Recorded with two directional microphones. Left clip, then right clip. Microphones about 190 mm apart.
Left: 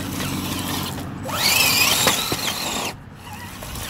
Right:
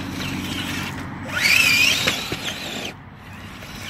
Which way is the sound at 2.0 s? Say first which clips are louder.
Left 3 dB; 20° left (ahead or behind).